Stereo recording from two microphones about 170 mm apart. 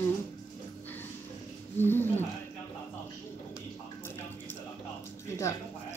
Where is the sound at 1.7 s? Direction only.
10° left (ahead or behind).